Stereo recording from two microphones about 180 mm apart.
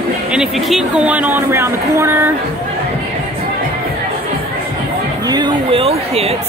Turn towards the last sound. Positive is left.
turn(degrees=-35)  # may be behind; listen again after turning